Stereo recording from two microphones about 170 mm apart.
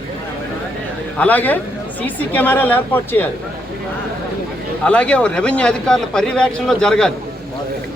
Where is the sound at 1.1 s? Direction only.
10° left (ahead or behind).